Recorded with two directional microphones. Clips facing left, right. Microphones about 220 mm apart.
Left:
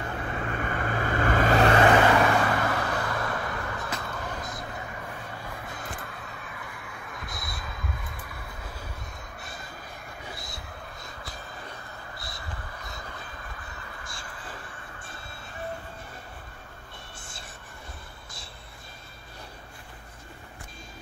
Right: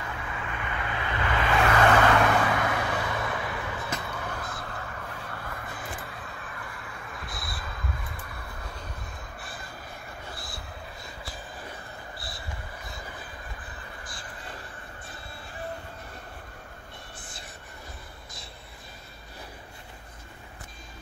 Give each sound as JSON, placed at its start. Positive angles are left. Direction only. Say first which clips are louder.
{"t": 0.0, "sound": "vehicle", "louder": "left 4 dB", "side_deg": 40}
{"t": 2.1, "sound": "vehicle", "louder": "left 1 dB", "side_deg": 0}
{"t": 4.4, "sound": "vehicle", "louder": "left 1 dB", "side_deg": 20}
{"t": 5.0, "sound": "crow", "louder": "even", "side_deg": 5}